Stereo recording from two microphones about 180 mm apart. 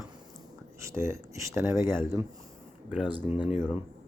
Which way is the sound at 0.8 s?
15° right (ahead or behind).